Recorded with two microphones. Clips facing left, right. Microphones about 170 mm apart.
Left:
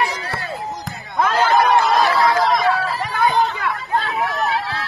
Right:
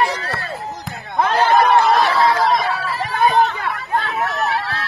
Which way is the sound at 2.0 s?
25° right (ahead or behind).